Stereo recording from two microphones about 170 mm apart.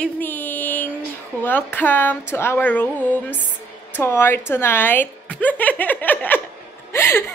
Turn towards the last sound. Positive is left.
turn(degrees=15)  # may be behind; listen again after turning